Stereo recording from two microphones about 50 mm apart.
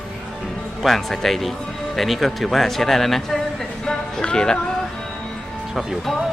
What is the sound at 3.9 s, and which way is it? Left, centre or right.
Music, centre.